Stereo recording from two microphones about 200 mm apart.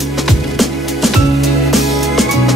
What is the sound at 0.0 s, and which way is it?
Music, centre (ahead or behind).